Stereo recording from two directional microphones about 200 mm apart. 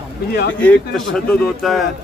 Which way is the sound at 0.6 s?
5° left (ahead or behind).